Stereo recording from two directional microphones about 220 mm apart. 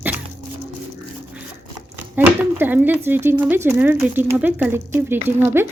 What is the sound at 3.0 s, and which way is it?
A woman's voice, 10° right (ahead or behind).